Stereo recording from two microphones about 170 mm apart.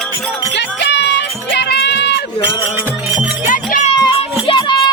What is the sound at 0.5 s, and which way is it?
Music, 90° left.